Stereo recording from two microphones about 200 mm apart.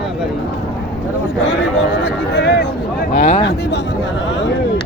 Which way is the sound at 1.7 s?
60° left (ahead or behind).